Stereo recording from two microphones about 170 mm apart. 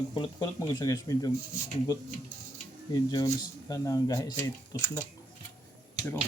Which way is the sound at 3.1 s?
20° left (ahead or behind).